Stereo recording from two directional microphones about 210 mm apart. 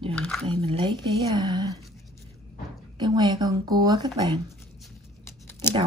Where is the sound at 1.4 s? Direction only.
20° right (ahead or behind).